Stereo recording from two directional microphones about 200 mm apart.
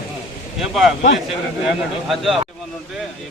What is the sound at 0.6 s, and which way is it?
Speech, centre (ahead or behind).